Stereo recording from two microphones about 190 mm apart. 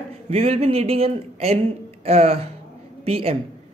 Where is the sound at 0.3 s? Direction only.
35° right (ahead or behind).